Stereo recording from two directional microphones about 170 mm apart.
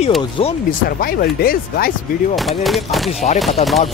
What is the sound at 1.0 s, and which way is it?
Speech, 60° left (ahead or behind).